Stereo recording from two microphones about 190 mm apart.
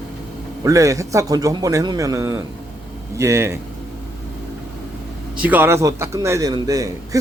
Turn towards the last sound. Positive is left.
turn(degrees=-20)  # may be behind; listen again after turning